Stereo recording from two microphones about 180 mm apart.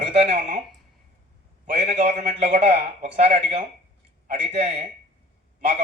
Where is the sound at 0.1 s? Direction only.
35° right (ahead or behind).